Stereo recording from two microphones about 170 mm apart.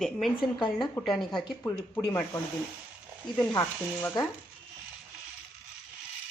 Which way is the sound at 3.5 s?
15° left (ahead or behind).